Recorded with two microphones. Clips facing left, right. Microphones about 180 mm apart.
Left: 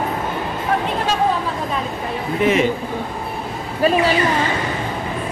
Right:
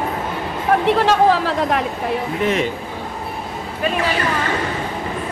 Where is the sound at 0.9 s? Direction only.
80° right.